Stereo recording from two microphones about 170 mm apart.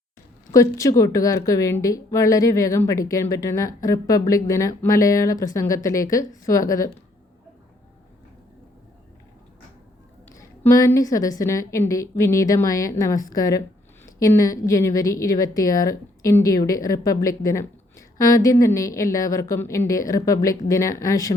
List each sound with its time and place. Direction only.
0.5 s a woman's voice: 20° left (ahead or behind)
10.3 s a woman's voice: 20° left (ahead or behind)